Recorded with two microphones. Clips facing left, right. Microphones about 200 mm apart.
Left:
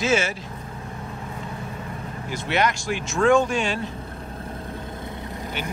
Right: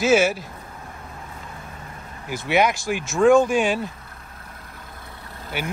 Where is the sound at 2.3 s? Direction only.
10° right (ahead or behind).